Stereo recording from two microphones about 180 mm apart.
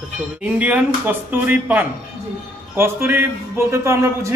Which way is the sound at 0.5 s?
10° right (ahead or behind).